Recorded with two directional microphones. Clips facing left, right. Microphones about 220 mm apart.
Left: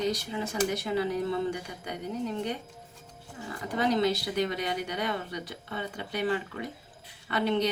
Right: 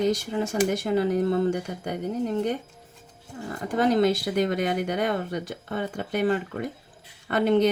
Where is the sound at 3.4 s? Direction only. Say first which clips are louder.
Right 5 dB; 50° right (ahead or behind).